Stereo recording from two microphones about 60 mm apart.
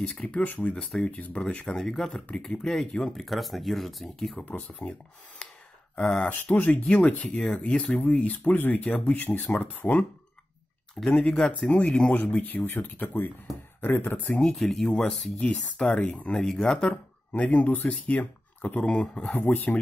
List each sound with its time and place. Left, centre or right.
0.1 s speech: centre
4.8 s speech: left
5.9 s speech: centre
6.8 s speech: centre
11.2 s speech: centre; by 14.2 s left
14.2 s speech: left
14.5 s speech: centre
16.4 s speech: centre
17.4 s speech: left
19.3 s speech: left